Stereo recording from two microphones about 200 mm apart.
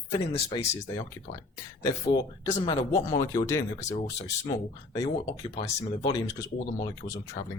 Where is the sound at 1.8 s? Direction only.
20° left (ahead or behind).